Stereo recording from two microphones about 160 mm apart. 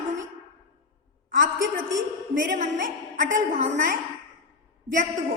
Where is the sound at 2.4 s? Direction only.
55° right (ahead or behind).